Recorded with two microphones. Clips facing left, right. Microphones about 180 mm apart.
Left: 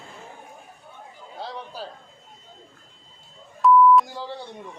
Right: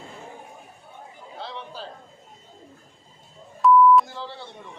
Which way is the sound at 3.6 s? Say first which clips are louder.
Even; centre (ahead or behind).